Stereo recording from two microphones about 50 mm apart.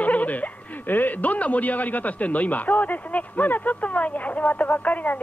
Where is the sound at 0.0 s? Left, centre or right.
Left.